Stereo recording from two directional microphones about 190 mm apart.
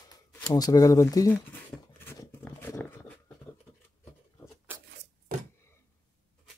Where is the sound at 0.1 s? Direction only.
20° left (ahead or behind).